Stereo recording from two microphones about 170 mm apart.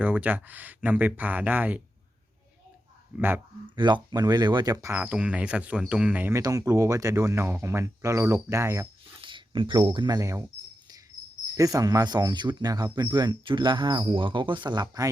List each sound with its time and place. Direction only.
0.0 s speech: 10° right (ahead or behind)
3.2 s speech: 10° right (ahead or behind)
3.8 s speech: 25° right (ahead or behind)
9.2 s speech: 30° right (ahead or behind)
11.5 s speech: 20° right (ahead or behind)